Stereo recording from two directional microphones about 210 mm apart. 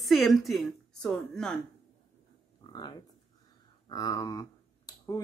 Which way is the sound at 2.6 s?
20° left (ahead or behind).